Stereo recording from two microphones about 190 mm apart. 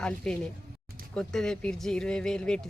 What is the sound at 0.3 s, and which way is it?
Speech, 5° left (ahead or behind).